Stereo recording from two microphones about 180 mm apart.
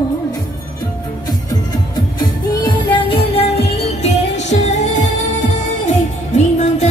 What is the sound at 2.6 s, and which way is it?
Music, 25° left (ahead or behind).